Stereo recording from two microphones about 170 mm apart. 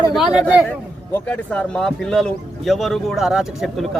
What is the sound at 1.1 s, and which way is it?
Speech, 5° left (ahead or behind).